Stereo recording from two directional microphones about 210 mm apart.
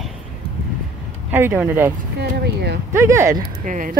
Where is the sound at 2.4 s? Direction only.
50° right (ahead or behind).